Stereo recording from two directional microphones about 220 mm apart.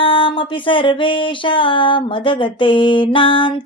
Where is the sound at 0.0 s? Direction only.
25° left (ahead or behind).